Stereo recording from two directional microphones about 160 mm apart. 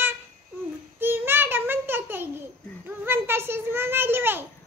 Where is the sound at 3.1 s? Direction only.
15° right (ahead or behind).